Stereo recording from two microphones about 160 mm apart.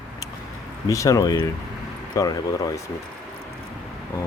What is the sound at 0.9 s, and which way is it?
Speech, 20° left (ahead or behind).